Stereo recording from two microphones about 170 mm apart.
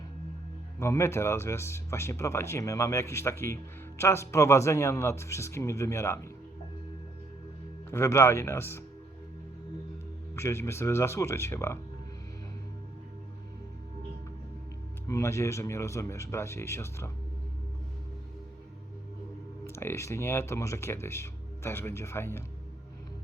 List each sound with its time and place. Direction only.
0.8 s speech: 15° left (ahead or behind)
7.9 s speech: 15° left (ahead or behind)
10.3 s speech: 15° left (ahead or behind)
15.0 s speech: 20° left (ahead or behind)
19.6 s speech: 15° left (ahead or behind)